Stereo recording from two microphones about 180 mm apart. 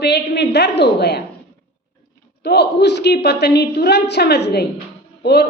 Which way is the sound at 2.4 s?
70° left (ahead or behind).